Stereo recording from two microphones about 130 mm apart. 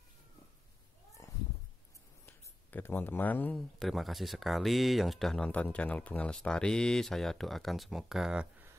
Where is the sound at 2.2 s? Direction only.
15° left (ahead or behind).